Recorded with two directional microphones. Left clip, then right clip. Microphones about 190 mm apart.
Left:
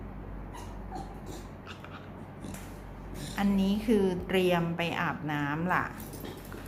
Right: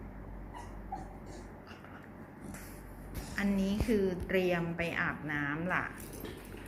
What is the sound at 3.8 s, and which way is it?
A woman's voice, 20° left (ahead or behind).